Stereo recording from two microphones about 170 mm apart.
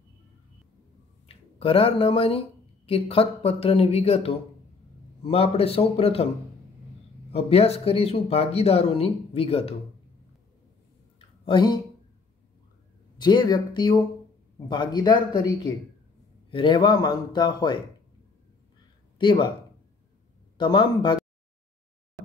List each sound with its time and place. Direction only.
1.2 s speech: 35° left (ahead or behind)
7.3 s speech: 35° left (ahead or behind)
11.4 s speech: 25° left (ahead or behind)
13.2 s speech: 25° left (ahead or behind)
19.1 s speech: 25° left (ahead or behind)
20.5 s speech: 25° left (ahead or behind)